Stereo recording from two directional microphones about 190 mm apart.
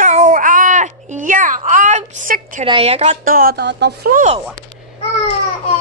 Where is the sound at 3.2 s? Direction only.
50° right (ahead or behind).